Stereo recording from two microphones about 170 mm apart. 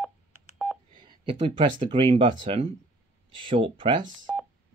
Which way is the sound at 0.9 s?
30° right (ahead or behind).